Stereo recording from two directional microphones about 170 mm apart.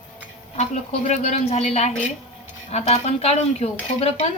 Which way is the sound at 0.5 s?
40° left (ahead or behind).